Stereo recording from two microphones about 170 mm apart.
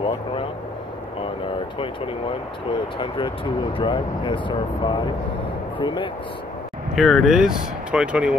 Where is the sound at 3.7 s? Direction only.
30° left (ahead or behind).